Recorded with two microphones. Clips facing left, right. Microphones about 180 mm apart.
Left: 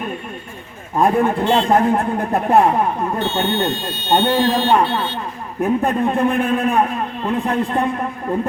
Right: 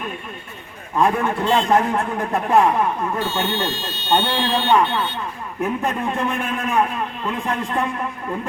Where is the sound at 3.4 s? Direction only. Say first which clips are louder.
Left 4 dB; 55° left (ahead or behind).